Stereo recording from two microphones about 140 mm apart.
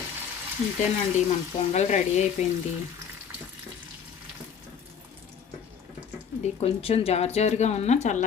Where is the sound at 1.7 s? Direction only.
55° left (ahead or behind).